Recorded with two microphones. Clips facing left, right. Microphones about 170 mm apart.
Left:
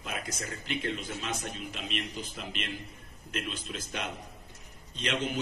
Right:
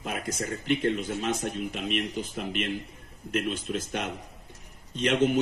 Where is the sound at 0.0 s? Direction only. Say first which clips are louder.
Right 6 dB; 50° right (ahead or behind).